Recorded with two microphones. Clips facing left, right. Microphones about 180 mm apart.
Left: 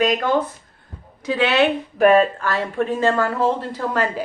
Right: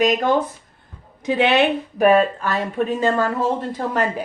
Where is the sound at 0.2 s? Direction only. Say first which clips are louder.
Right 1 dB; 15° right (ahead or behind).